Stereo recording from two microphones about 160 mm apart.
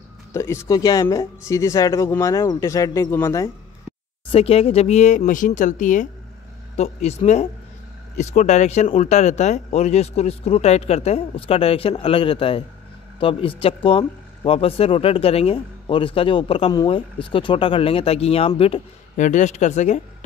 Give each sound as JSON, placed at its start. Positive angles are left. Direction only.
{"t": 0.3, "sound": "speech", "side_deg": 15}
{"t": 4.3, "sound": "speech", "side_deg": 40}
{"t": 19.1, "sound": "speech", "side_deg": 50}